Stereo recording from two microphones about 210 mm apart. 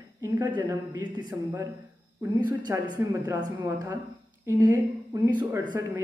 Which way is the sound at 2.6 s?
15° right (ahead or behind).